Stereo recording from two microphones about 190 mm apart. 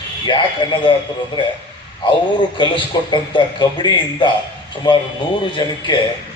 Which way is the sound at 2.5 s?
25° left (ahead or behind).